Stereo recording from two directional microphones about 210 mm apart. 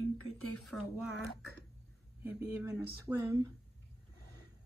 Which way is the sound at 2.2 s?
10° right (ahead or behind).